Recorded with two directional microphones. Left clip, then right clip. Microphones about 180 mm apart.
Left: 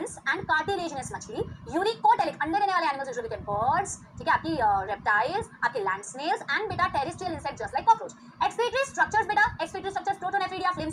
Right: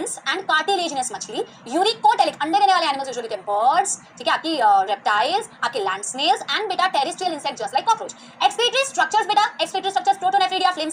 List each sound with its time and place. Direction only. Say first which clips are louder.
0.0 s a woman's voice: right 5 dB; 15° right (ahead or behind)